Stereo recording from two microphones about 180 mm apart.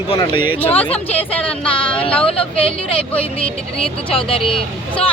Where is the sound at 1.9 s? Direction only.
30° left (ahead or behind).